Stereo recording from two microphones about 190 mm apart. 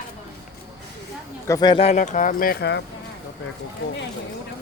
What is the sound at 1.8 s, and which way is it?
Speech, 40° left (ahead or behind).